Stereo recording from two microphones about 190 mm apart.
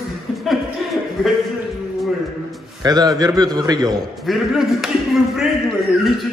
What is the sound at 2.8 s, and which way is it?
A man's voice, 20° right (ahead or behind).